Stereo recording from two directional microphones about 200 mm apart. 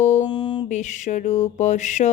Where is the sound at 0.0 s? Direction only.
35° left (ahead or behind).